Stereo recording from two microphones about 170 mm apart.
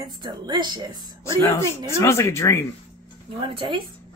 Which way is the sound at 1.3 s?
15° left (ahead or behind).